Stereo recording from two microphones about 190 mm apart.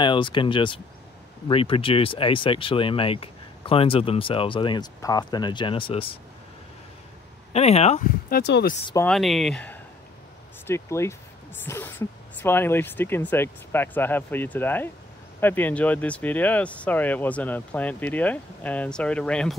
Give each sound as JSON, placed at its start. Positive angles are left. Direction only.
{"t": 0.0, "sound": "speech", "side_deg": 25}
{"t": 7.5, "sound": "speech", "side_deg": 35}
{"t": 8.3, "sound": "speech", "side_deg": 60}
{"t": 9.0, "sound": "speech", "side_deg": 0}